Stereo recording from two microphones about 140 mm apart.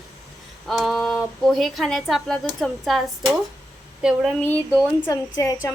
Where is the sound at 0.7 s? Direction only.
Centre (ahead or behind).